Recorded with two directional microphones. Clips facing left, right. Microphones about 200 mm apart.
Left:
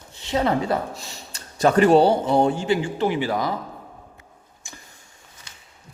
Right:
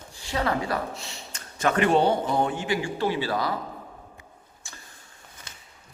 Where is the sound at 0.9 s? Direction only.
40° left (ahead or behind); by 3.5 s 20° left (ahead or behind).